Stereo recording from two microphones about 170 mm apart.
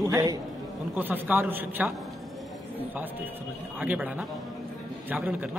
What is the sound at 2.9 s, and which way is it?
A man's voice, 10° right (ahead or behind).